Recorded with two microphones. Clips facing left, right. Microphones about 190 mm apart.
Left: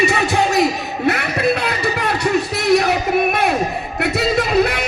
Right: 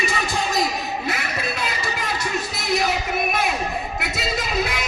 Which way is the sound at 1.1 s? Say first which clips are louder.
Left 9 dB; 65° left (ahead or behind).